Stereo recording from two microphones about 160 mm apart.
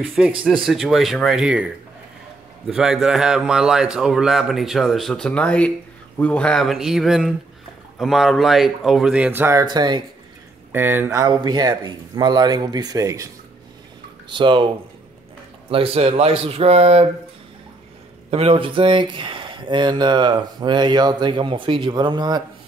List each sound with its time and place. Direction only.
0.0 s a man's voice: centre (ahead or behind); by 10.0 s 25° right (ahead or behind)
10.7 s speech: 10° right (ahead or behind)
14.3 s speech: 30° right (ahead or behind)
15.7 s speech: 35° right (ahead or behind)
18.3 s speech: 35° right (ahead or behind)